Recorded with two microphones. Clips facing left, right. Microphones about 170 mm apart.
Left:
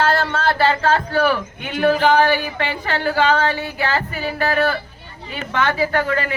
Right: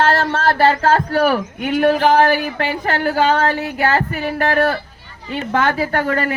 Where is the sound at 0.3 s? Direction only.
40° right (ahead or behind).